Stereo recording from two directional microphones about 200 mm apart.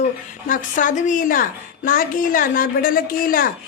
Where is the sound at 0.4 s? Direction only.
40° left (ahead or behind).